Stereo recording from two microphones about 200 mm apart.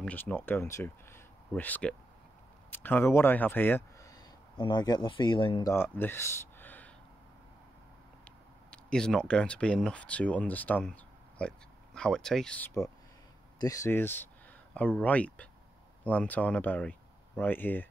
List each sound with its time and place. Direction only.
0.0 s speech: 10° left (ahead or behind)
4.6 s speech: 20° left (ahead or behind)
8.6 s speech: 5° left (ahead or behind)